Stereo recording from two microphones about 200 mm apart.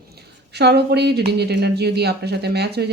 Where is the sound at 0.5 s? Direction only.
55° right (ahead or behind).